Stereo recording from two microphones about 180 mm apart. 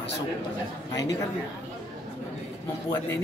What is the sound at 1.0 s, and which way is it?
Speech, 20° left (ahead or behind).